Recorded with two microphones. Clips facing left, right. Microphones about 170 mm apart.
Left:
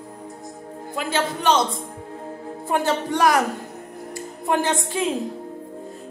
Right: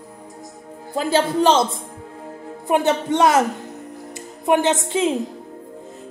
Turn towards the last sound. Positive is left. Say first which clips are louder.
# right 4 dB
turn(degrees=-20)  # may be behind; listen again after turning